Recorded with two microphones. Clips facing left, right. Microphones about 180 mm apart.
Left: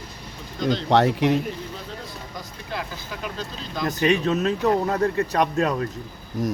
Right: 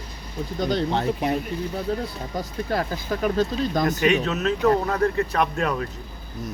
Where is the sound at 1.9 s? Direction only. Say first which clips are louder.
Right 9 dB; 45° right (ahead or behind).